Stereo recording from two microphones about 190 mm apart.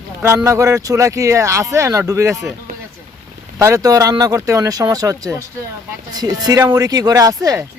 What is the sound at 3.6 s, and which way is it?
Speech, 15° right (ahead or behind).